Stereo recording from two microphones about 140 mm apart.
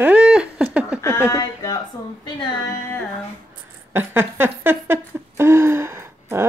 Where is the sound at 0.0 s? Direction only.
10° right (ahead or behind).